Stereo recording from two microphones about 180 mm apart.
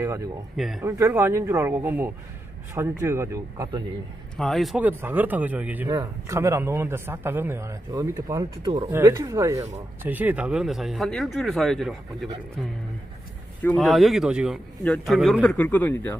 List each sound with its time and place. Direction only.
0.6 s speech: centre (ahead or behind)
0.8 s a man's voice: 15° right (ahead or behind)
4.4 s a man's voice: centre (ahead or behind)
5.9 s a man's voice: 20° right (ahead or behind); by 12.3 s centre (ahead or behind)
13.6 s speech: 5° left (ahead or behind)